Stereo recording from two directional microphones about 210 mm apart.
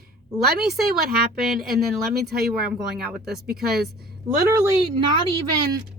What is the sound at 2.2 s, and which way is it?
Speech, 50° right (ahead or behind).